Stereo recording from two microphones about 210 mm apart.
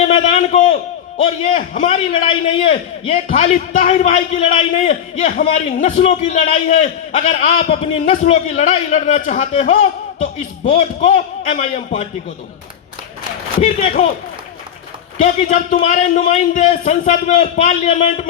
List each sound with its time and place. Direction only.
0.3 s a sound: 30° left (ahead or behind)
1.5 s a man's voice: 35° left (ahead or behind)
13.6 s a man's voice: 35° left (ahead or behind)
15.2 s a man's voice: 35° left (ahead or behind)